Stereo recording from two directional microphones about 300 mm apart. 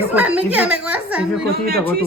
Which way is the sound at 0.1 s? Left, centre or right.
Centre.